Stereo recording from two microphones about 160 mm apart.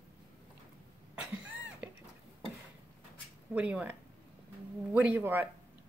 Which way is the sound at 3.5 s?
10° right (ahead or behind).